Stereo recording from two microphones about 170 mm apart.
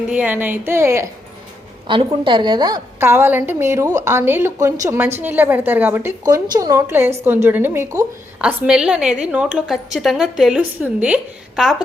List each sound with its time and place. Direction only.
0.1 s a woman's voice: 10° right (ahead or behind)
1.9 s a woman's voice: 30° right (ahead or behind)
3.0 s a woman's voice: 15° right (ahead or behind)